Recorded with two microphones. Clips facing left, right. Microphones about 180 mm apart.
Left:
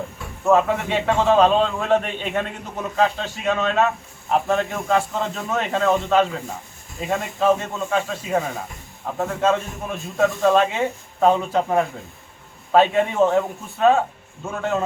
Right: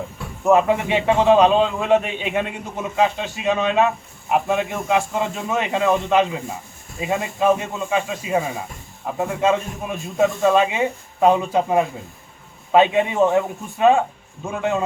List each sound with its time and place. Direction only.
0.4 s a man's voice: 15° right (ahead or behind)
4.6 s a man's voice: centre (ahead or behind)
9.9 s a man's voice: centre (ahead or behind)